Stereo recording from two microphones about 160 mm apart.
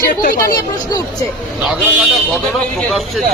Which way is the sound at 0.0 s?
60° left (ahead or behind).